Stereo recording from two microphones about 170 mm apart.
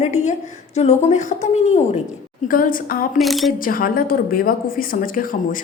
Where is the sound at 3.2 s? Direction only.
Centre (ahead or behind).